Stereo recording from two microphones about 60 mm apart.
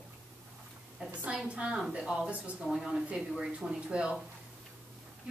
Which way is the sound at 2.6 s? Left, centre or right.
Centre.